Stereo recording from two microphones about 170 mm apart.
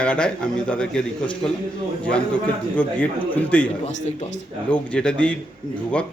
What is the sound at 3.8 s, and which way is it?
Speech, 40° left (ahead or behind).